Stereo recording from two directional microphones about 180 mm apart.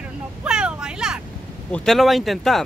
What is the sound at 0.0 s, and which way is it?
Vehicle, 5° right (ahead or behind).